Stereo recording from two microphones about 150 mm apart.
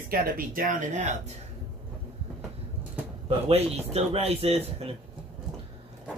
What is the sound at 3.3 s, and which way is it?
A man's voice, 40° right (ahead or behind).